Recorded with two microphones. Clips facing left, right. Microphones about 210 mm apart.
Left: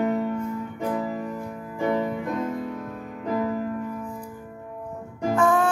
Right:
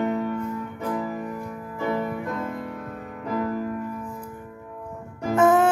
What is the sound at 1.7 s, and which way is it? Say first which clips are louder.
Music: left 2 dB; 15° left (ahead or behind).